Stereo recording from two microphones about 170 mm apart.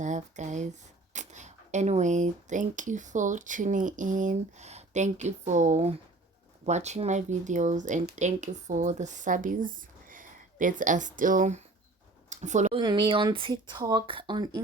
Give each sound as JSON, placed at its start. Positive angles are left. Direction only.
{"t": 0.0, "sound": "speech", "side_deg": -45}
{"t": 12.3, "sound": "a sound", "side_deg": -45}
{"t": 12.7, "sound": "speech", "side_deg": -30}